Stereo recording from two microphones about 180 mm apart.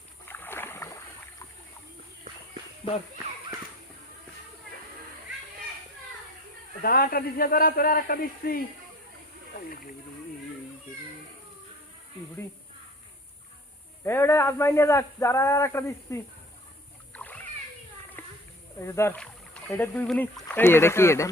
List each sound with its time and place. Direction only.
0.3 s rowboat: 10° left (ahead or behind)
2.8 s speech: 30° left (ahead or behind)
6.8 s a man's voice: 55° left (ahead or behind)
14.0 s speech: 15° left (ahead or behind)
17.1 s splash: 10° left (ahead or behind)
18.2 s a sound: 10° left (ahead or behind)
18.8 s speech: 15° left (ahead or behind)